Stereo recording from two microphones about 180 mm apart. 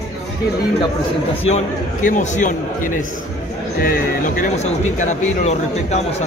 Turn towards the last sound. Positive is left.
turn(degrees=45)  # may be behind; listen again after turning